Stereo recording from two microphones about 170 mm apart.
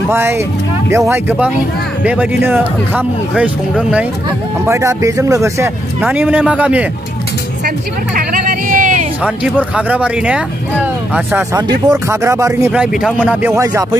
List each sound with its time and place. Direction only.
0.1 s speech: 15° right (ahead or behind)
7.6 s music: 60° right (ahead or behind)
9.8 s speech: 10° right (ahead or behind)
11.5 s speech: 20° right (ahead or behind)
12.7 s speech: 5° right (ahead or behind)